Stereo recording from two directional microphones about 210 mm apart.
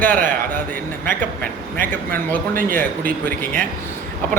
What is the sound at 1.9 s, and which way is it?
A man's voice, 10° left (ahead or behind).